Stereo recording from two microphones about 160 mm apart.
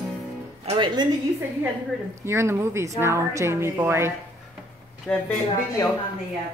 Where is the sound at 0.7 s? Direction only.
30° right (ahead or behind).